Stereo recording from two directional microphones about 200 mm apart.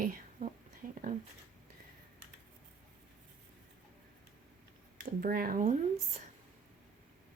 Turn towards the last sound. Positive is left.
turn(degrees=-40)  # may be behind; listen again after turning